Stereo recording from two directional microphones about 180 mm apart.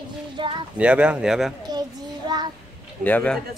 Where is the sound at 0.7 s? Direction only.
5° right (ahead or behind).